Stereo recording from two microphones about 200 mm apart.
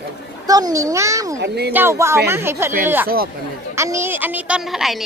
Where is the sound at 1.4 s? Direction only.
55° right (ahead or behind).